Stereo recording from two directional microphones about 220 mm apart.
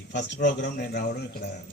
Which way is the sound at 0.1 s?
50° left (ahead or behind).